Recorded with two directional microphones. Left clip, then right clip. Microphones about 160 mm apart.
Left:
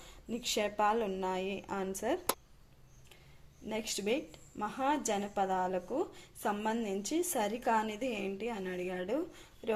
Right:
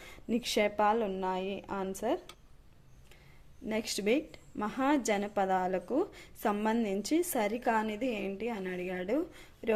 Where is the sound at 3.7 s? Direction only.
30° right (ahead or behind).